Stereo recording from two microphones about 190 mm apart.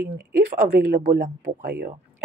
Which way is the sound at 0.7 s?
60° right (ahead or behind).